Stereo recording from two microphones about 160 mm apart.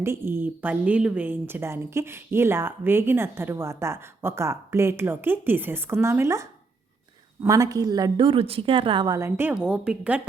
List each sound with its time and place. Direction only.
0.0 s a woman's voice: 15° right (ahead or behind); by 9.1 s 30° right (ahead or behind)
9.1 s a woman's voice: 15° right (ahead or behind)